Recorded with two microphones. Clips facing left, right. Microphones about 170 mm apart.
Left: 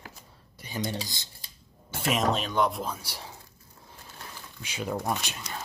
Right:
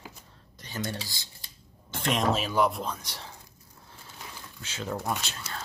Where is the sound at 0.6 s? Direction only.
15° left (ahead or behind).